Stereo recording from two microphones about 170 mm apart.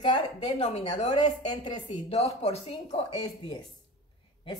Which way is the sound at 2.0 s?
40° left (ahead or behind).